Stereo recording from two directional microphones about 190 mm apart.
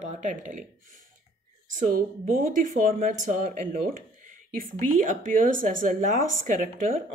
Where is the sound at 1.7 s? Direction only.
45° right (ahead or behind).